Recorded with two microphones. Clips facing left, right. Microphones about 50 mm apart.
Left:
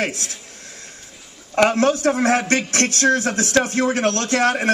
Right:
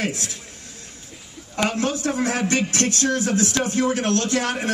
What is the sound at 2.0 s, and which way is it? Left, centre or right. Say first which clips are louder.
Speech: left 5 dB; left.